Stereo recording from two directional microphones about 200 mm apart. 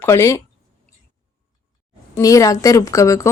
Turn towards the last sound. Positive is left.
turn(degrees=15)  # may be behind; listen again after turning